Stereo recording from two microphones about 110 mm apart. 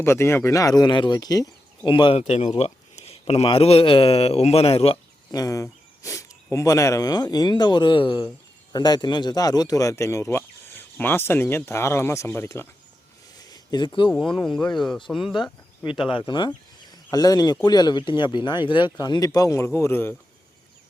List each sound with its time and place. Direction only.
0.0 s speech: 25° left (ahead or behind); by 2.1 s 45° left (ahead or behind)
2.1 s speech: 75° left (ahead or behind)
5.3 s speech: 35° left (ahead or behind)
13.5 s a sound: 40° left (ahead or behind)
14.1 s speech: 5° left (ahead or behind)
15.8 s speech: 50° left (ahead or behind); by 20.1 s 20° left (ahead or behind)